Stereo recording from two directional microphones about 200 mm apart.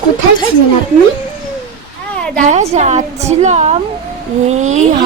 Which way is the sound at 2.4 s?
35° right (ahead or behind).